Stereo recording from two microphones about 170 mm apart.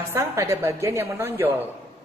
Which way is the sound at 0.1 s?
15° right (ahead or behind).